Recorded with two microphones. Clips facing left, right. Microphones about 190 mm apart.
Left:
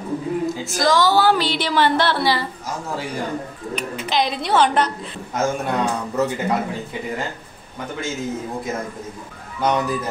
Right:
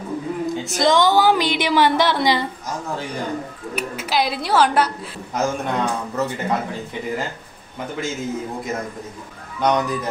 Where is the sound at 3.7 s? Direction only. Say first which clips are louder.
Even; 5° right (ahead or behind).